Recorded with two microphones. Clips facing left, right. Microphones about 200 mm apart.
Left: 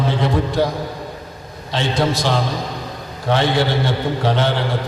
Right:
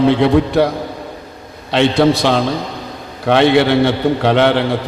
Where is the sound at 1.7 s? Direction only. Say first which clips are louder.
Right 7 dB; 65° right (ahead or behind).